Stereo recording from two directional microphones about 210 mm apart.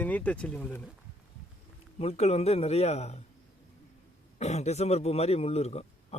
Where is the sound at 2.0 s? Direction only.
30° left (ahead or behind).